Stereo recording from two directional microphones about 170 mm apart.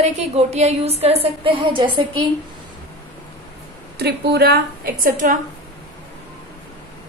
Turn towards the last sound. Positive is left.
turn(degrees=-50)  # may be behind; listen again after turning